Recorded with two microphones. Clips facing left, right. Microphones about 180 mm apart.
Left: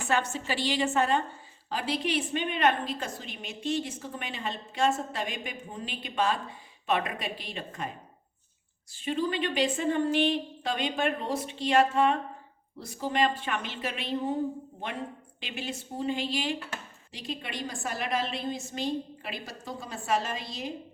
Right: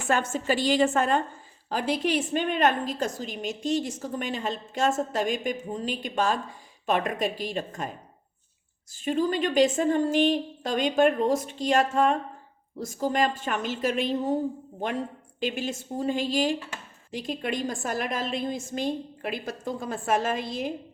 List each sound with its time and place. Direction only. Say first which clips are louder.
0.1 s a woman's voice: right 4 dB; 50° right (ahead or behind)
8.9 s a woman's voice: right 4 dB; 45° right (ahead or behind)
15.4 s a woman's voice: right 8 dB; 45° right (ahead or behind)